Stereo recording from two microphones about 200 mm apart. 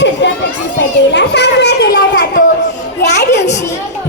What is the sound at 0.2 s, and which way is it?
Children playing, 60° left (ahead or behind).